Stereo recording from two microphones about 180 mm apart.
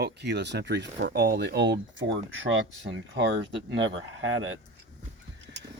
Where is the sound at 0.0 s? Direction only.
70° right (ahead or behind); by 4.3 s 90° right.